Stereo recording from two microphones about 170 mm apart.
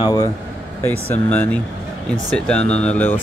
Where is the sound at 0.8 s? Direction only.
10° left (ahead or behind).